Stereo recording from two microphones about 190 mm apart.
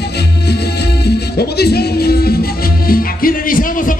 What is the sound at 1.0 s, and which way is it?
Music, 60° left (ahead or behind).